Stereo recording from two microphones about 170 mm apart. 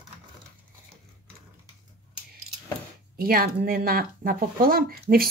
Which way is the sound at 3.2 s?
60° right (ahead or behind).